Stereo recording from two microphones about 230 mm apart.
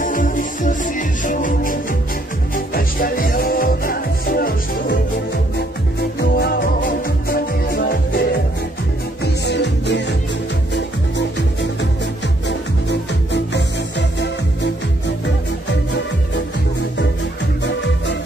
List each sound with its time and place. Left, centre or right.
0.0 s music: left
9.2 s music: left